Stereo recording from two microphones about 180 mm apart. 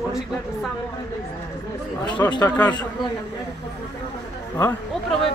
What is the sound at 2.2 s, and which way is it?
Speech, 15° left (ahead or behind).